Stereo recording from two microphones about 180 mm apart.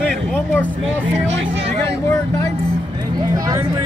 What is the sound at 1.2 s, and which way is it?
Speech, 90° right.